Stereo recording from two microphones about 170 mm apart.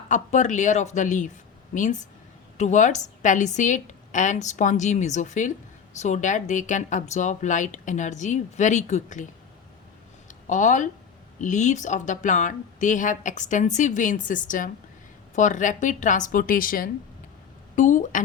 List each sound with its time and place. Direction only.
0.1 s speech: 45° left (ahead or behind)
10.2 s a sound: 45° left (ahead or behind)
11.3 s speech: 45° left (ahead or behind)